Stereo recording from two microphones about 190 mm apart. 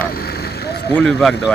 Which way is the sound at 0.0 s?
55° left (ahead or behind).